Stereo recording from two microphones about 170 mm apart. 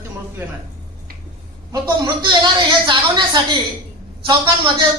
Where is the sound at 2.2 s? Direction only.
25° right (ahead or behind).